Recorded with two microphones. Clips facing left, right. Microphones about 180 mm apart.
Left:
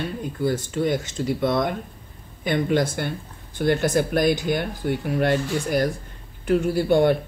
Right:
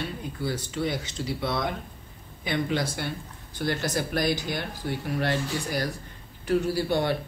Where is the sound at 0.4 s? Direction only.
50° left (ahead or behind).